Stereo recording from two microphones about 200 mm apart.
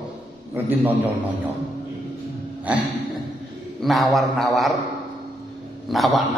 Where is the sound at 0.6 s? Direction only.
10° right (ahead or behind).